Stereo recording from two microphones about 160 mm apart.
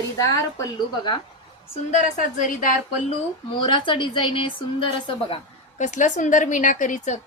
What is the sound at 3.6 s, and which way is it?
A woman's voice, 30° left (ahead or behind).